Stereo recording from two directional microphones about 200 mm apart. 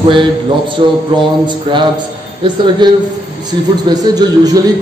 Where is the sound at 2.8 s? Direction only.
20° right (ahead or behind).